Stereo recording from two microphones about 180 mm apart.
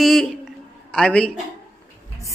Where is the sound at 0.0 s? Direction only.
Centre (ahead or behind).